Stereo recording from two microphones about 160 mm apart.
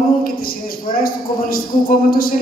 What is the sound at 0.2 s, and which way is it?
A woman's voice, 65° left (ahead or behind).